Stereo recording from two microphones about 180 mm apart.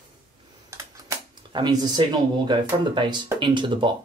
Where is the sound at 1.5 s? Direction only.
25° right (ahead or behind).